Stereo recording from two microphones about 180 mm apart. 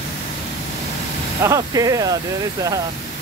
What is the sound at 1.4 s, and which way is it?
Speech, 20° right (ahead or behind).